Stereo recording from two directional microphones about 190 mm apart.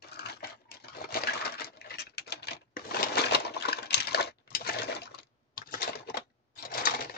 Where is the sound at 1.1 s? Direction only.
55° left (ahead or behind).